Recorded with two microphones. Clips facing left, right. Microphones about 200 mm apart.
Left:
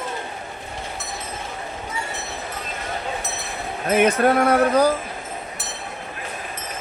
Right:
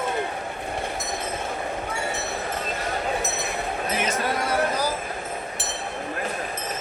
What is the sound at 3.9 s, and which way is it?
Music, 60° left (ahead or behind).